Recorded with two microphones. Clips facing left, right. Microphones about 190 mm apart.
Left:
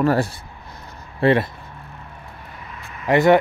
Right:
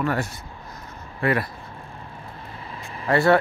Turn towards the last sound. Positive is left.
turn(degrees=20)  # may be behind; listen again after turning